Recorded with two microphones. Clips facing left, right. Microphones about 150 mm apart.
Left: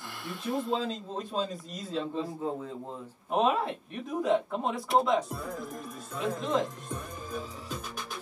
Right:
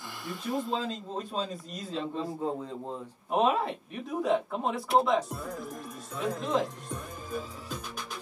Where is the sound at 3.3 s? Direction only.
Centre (ahead or behind).